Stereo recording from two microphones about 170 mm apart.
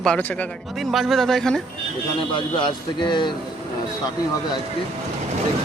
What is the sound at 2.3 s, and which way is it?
Speech, 25° left (ahead or behind).